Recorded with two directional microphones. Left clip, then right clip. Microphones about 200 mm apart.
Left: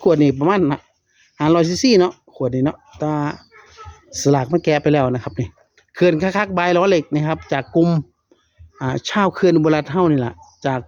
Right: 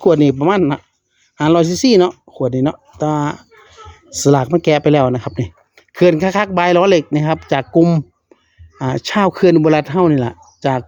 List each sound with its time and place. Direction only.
0.0 s speech: 20° right (ahead or behind)